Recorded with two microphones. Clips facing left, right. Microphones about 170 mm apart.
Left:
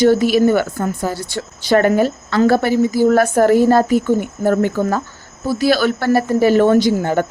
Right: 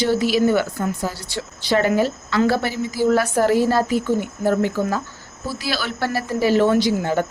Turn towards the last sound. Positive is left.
turn(degrees=55)  # may be behind; listen again after turning